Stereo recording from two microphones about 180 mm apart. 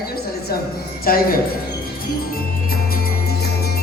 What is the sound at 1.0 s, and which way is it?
Speech, 55° left (ahead or behind).